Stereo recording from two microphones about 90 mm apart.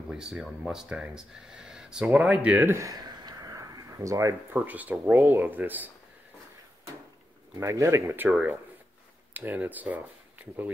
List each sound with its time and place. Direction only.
0.1 s speech: 5° right (ahead or behind)
2.7 s speech: 35° right (ahead or behind)
3.0 s a sound: 50° right (ahead or behind)
4.6 s speech: 20° right (ahead or behind)
7.6 s speech: 30° right (ahead or behind)
8.3 s speech: 15° right (ahead or behind)